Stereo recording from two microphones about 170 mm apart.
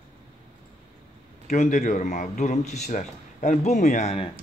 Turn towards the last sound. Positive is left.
turn(degrees=45)  # may be behind; listen again after turning